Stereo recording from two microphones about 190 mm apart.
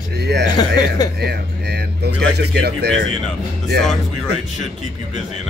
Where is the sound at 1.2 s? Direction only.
60° right (ahead or behind).